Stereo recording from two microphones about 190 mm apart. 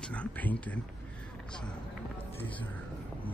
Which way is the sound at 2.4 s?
25° left (ahead or behind).